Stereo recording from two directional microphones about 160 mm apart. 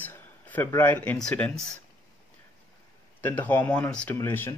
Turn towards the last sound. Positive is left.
turn(degrees=15)  # may be behind; listen again after turning